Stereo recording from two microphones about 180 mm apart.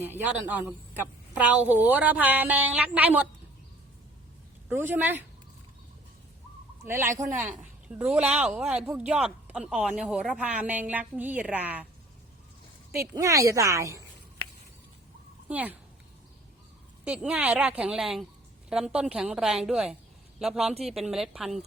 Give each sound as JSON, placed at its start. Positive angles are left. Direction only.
{"t": 0.0, "sound": "speech", "side_deg": -10}
{"t": 4.7, "sound": "speech", "side_deg": -10}
{"t": 6.8, "sound": "speech", "side_deg": -15}
{"t": 12.9, "sound": "speech", "side_deg": -15}
{"t": 15.4, "sound": "speech", "side_deg": -10}
{"t": 17.0, "sound": "speech", "side_deg": -5}